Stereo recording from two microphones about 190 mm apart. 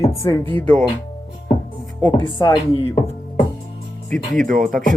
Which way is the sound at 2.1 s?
25° left (ahead or behind).